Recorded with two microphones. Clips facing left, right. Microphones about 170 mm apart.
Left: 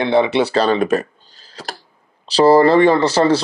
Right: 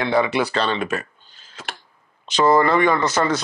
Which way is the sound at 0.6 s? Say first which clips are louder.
Left 8 dB; 40° left (ahead or behind).